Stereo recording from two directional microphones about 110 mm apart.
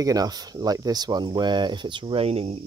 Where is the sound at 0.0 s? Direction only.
35° right (ahead or behind).